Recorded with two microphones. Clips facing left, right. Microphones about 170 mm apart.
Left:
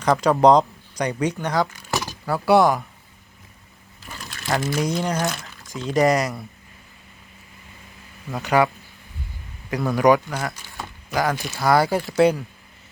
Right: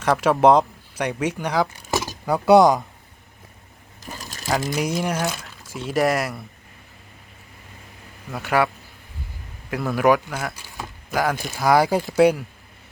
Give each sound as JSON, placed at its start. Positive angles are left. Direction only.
{"t": 0.0, "sound": "speech", "side_deg": -5}
{"t": 1.9, "sound": "a sound", "side_deg": -15}
{"t": 4.0, "sound": "sewing machine", "side_deg": -40}
{"t": 4.7, "sound": "speech", "side_deg": -10}
{"t": 8.3, "sound": "speech", "side_deg": 0}